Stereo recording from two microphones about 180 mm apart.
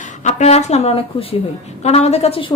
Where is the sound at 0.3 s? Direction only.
40° left (ahead or behind).